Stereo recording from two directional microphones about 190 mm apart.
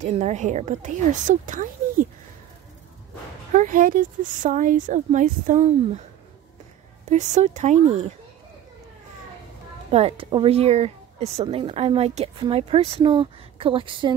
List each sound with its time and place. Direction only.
0.0 s speech: 35° right (ahead or behind)
3.5 s a woman's voice: 45° right (ahead or behind)
7.1 s speech: 40° right (ahead or behind)
9.8 s a woman's voice: 30° right (ahead or behind)